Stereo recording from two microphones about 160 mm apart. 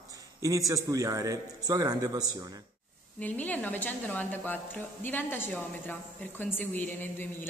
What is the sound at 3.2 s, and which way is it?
A woman's voice, 10° left (ahead or behind).